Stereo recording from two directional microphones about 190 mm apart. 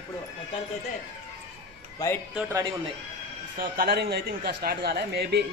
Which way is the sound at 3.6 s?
55° right (ahead or behind).